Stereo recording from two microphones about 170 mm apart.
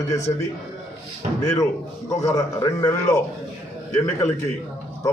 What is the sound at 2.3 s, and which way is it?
Speech, 20° left (ahead or behind).